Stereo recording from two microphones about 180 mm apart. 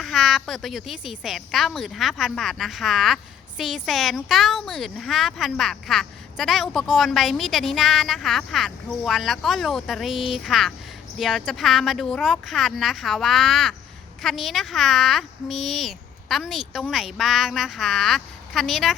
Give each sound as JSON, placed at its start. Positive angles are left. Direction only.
{"t": 0.0, "sound": "speech", "side_deg": 0}